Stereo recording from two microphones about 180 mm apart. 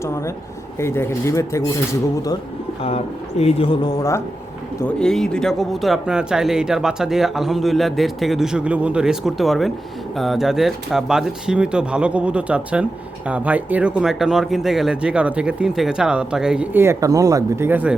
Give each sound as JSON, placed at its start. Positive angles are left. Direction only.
{"t": 0.0, "sound": "speech", "side_deg": 15}
{"t": 2.8, "sound": "speech", "side_deg": 35}
{"t": 4.8, "sound": "speech", "side_deg": 5}